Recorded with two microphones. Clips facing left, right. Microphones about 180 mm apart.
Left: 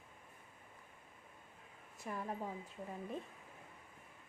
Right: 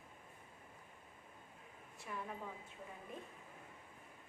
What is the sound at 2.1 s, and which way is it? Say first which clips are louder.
Speech: left 3 dB; 40° left (ahead or behind).